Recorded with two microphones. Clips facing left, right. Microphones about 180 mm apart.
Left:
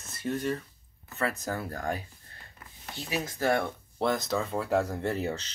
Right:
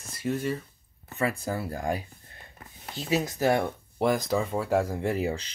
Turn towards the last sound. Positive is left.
turn(degrees=-10)  # may be behind; listen again after turning